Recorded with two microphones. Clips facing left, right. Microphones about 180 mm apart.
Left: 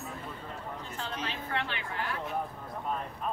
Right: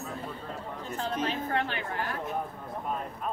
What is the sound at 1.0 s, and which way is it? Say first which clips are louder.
A woman's voice: right 8 dB; 45° right (ahead or behind).